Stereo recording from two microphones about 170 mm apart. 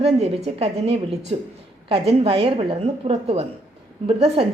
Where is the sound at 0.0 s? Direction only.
40° right (ahead or behind).